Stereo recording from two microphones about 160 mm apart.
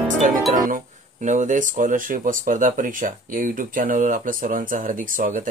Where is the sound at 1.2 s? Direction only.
50° right (ahead or behind).